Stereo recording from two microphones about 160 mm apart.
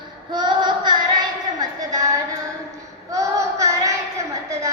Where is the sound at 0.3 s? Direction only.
30° right (ahead or behind).